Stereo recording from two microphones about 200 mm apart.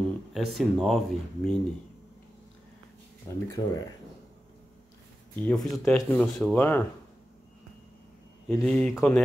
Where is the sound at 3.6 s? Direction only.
20° left (ahead or behind).